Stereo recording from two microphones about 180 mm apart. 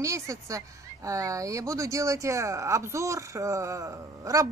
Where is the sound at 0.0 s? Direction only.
15° right (ahead or behind).